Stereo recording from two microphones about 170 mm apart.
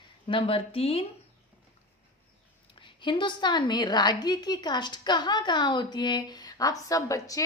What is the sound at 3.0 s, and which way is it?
Speech, 25° left (ahead or behind).